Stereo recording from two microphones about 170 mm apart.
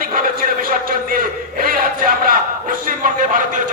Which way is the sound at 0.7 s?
55° right (ahead or behind).